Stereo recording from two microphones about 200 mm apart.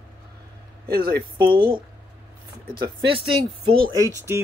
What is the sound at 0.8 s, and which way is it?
Speech, 50° right (ahead or behind).